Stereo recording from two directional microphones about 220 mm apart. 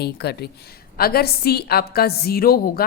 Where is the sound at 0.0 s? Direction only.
45° left (ahead or behind).